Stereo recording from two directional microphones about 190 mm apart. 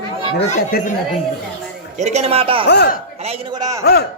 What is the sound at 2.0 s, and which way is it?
Speech, 35° right (ahead or behind).